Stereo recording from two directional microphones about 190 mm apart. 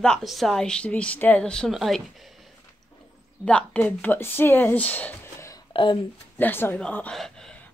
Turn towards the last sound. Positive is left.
turn(degrees=0)  # may be behind; listen again after turning